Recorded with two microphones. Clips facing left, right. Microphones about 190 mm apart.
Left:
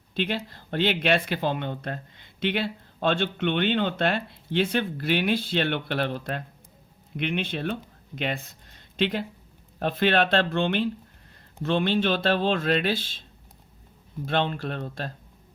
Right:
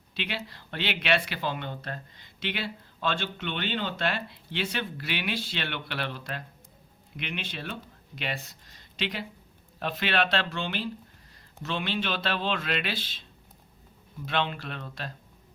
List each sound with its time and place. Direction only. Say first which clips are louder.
0.1 s speech: left 7 dB; 50° left (ahead or behind)
14.3 s speech: left 4 dB; 45° left (ahead or behind)